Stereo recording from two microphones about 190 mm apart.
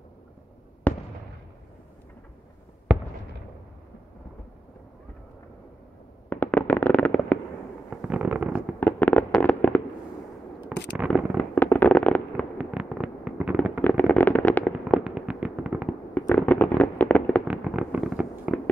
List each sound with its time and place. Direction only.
0.9 s fireworks: 10° left (ahead or behind)
2.9 s fireworks: 5° right (ahead or behind)
6.2 s fireworks: 10° left (ahead or behind)
7.9 s fireworks: 5° right (ahead or behind)
8.7 s fireworks: 10° left (ahead or behind)
10.7 s a sound: 10° right (ahead or behind)
11.1 s fireworks: 5° left (ahead or behind)
12.5 s fireworks: 5° right (ahead or behind)
13.7 s firecracker: 10° left (ahead or behind); by 15.9 s 5° right (ahead or behind)
16.2 s fireworks: 10° left (ahead or behind)
17.5 s fireworks: 5° right (ahead or behind)